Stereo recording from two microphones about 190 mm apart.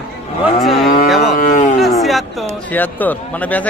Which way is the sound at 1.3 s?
40° left (ahead or behind).